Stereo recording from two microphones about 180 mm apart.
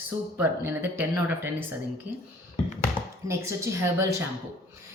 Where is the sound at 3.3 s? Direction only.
15° right (ahead or behind).